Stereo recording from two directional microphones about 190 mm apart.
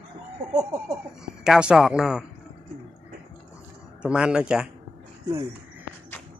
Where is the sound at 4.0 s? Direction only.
5° right (ahead or behind).